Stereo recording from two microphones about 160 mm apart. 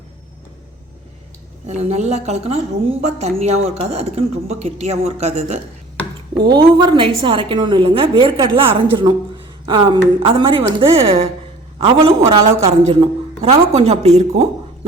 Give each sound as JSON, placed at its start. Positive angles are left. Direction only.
{"t": 1.6, "sound": "a woman's voice", "side_deg": -45}
{"t": 6.5, "sound": "a woman's voice", "side_deg": -30}
{"t": 12.3, "sound": "a woman's voice", "side_deg": -15}
{"t": 12.6, "sound": "a woman's voice", "side_deg": -40}